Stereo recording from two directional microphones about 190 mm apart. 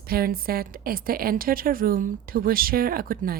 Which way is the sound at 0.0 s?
50° right (ahead or behind).